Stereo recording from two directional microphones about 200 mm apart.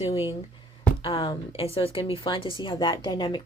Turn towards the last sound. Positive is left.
turn(degrees=20)  # may be behind; listen again after turning